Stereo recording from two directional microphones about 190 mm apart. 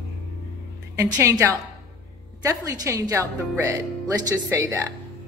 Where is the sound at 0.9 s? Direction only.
15° right (ahead or behind).